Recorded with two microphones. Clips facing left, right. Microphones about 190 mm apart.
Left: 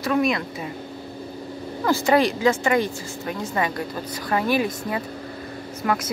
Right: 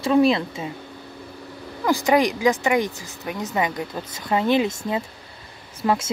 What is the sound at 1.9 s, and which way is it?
Speech, 15° right (ahead or behind).